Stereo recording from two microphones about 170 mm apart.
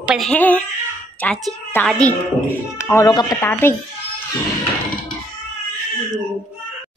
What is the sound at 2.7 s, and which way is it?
Speech, 15° left (ahead or behind).